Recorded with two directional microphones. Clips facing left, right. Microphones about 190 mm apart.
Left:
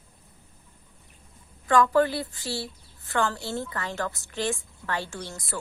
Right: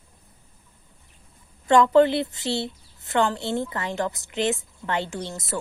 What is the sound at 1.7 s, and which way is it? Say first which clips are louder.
A woman's voice: right 5 dB; 25° right (ahead or behind).